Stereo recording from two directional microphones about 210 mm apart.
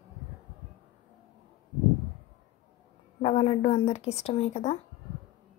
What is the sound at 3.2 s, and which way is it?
Speech, 30° left (ahead or behind).